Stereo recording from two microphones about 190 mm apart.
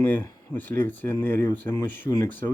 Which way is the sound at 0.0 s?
10° left (ahead or behind).